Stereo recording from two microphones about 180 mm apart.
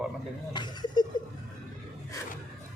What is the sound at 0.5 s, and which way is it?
Speech, 25° left (ahead or behind).